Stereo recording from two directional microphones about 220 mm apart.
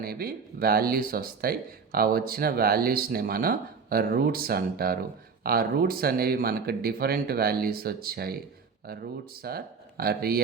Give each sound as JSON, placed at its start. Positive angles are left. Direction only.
{"t": 0.0, "sound": "speech", "side_deg": -45}
{"t": 9.4, "sound": "speech", "side_deg": -45}